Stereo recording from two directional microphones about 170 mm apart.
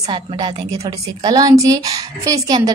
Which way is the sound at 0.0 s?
30° right (ahead or behind).